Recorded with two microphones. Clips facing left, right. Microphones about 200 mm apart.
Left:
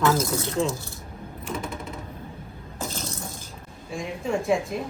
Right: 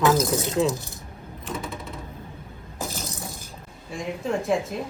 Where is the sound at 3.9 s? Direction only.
Centre (ahead or behind).